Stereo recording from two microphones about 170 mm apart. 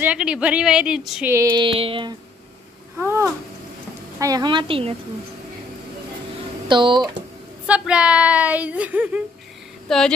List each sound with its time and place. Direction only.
0.0 s a woman's voice: 5° right (ahead or behind)
1.3 s female singing: 20° right (ahead or behind)
3.0 s speech: 15° right (ahead or behind)
4.2 s female singing: 20° right (ahead or behind)
6.7 s female singing: 30° right (ahead or behind)
7.6 s speech: 5° right (ahead or behind)
9.8 s speech: 5° left (ahead or behind)